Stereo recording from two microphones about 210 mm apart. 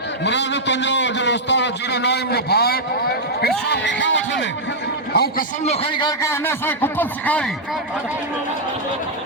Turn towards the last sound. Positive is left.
turn(degrees=5)  # may be behind; listen again after turning